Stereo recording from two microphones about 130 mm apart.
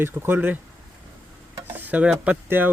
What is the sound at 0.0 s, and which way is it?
Speech, 15° right (ahead or behind).